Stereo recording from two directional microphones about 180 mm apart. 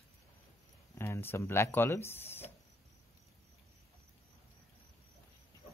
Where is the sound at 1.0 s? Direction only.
10° left (ahead or behind).